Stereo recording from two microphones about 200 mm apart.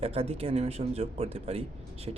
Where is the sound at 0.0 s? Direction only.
30° right (ahead or behind).